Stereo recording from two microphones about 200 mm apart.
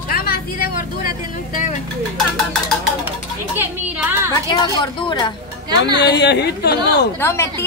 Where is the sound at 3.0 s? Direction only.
10° right (ahead or behind).